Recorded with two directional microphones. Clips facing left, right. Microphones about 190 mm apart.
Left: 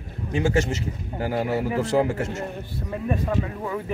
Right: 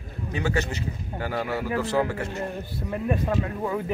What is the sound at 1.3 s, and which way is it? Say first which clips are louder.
A man's voice: left 3 dB; 25° left (ahead or behind).